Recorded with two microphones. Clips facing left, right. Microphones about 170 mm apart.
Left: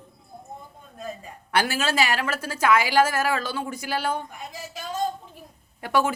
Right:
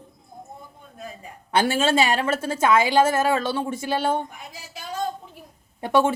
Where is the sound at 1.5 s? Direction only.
25° right (ahead or behind).